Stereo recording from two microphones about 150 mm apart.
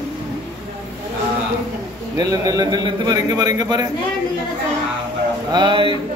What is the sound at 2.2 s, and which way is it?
A man's voice, 25° right (ahead or behind).